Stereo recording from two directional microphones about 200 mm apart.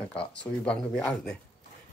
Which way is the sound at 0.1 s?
5° left (ahead or behind).